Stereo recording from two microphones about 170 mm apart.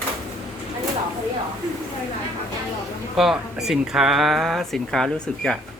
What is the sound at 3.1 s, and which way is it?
Speech, centre (ahead or behind).